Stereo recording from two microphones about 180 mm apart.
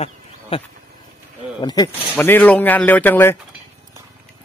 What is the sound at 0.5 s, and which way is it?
Speech, 30° left (ahead or behind).